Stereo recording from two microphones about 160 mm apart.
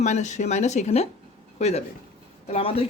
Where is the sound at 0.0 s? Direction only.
45° left (ahead or behind).